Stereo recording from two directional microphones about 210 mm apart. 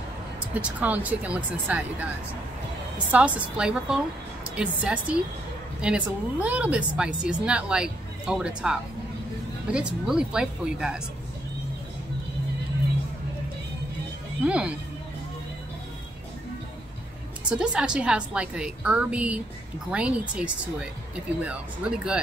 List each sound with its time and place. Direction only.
0.6 s speech: 5° right (ahead or behind)
3.1 s a woman's voice: 5° right (ahead or behind)
14.4 s a woman's voice: 5° right (ahead or behind)
17.5 s a woman's voice: 5° right (ahead or behind)